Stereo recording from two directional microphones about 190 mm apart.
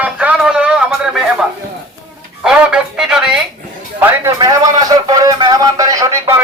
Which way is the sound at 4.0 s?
15° right (ahead or behind).